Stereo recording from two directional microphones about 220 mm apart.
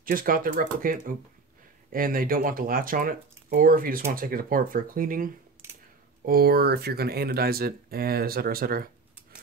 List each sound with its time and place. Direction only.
0.0 s speech: 40° right (ahead or behind)